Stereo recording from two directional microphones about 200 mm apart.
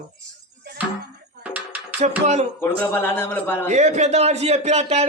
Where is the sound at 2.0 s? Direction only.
35° right (ahead or behind).